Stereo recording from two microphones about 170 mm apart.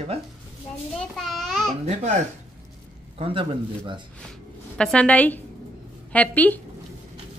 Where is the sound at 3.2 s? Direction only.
30° right (ahead or behind).